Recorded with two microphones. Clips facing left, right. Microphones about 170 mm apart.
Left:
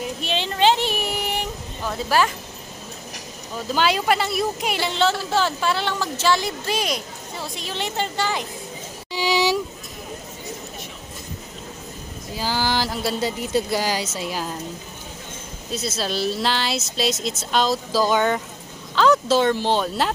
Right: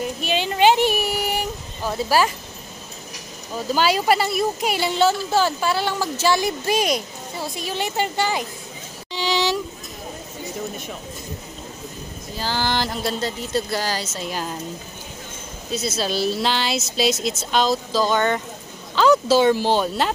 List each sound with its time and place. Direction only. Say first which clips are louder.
0.0 s child singing: right 3 dB; 5° right (ahead or behind)
1.9 s speech: right 1 dB; 10° right (ahead or behind)
3.7 s speech: right 1 dB; 5° right (ahead or behind)
6.7 s speech: right 4 dB; 45° right (ahead or behind)
7.3 s speech: right 3 dB; 10° right (ahead or behind)
9.1 s a sound: left 1 dB; 10° left (ahead or behind)
12.4 s speech: even; 10° left (ahead or behind)
15.7 s speech: right 2 dB; centre (ahead or behind)